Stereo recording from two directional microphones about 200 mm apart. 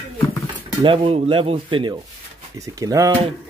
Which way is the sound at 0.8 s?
25° right (ahead or behind).